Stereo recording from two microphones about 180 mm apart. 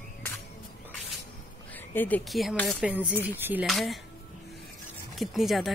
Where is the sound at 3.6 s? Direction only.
Centre (ahead or behind).